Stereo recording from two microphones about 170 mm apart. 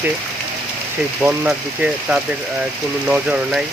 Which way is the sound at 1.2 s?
10° right (ahead or behind).